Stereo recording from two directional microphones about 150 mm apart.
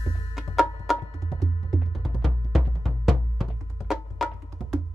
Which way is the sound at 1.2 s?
20° right (ahead or behind).